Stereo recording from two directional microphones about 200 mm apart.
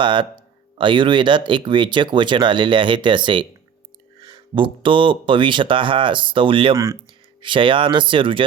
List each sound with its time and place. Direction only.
0.0 s speech: 25° right (ahead or behind)